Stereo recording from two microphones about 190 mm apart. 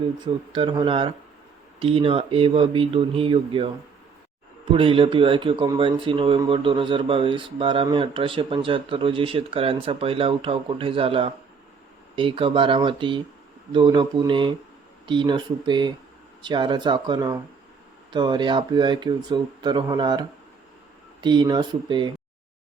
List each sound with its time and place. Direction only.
0.5 s speech: 25° right (ahead or behind)
4.7 s speech: 25° right (ahead or behind)